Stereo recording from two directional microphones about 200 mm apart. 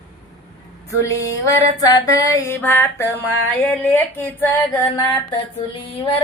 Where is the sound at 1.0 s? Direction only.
15° left (ahead or behind).